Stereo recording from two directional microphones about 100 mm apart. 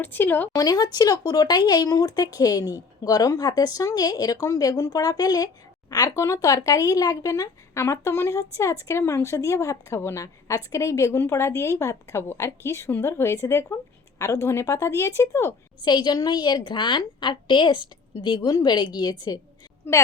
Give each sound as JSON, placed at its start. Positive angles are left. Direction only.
{"t": 0.0, "sound": "speech", "side_deg": 20}
{"t": 0.5, "sound": "speech", "side_deg": 40}
{"t": 15.8, "sound": "a woman's voice", "side_deg": 45}
{"t": 19.9, "sound": "speech", "side_deg": 20}